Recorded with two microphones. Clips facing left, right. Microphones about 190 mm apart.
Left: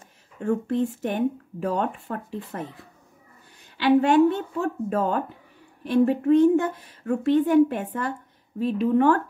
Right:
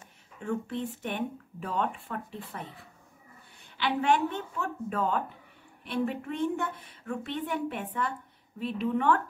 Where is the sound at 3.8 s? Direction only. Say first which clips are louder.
Left 9 dB; 35° left (ahead or behind).